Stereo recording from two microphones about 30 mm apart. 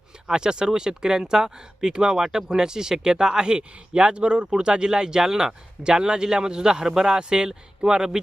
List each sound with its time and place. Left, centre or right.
0.3 s speech: right